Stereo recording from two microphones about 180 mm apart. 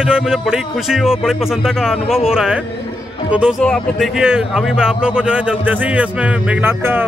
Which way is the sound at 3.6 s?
5° left (ahead or behind).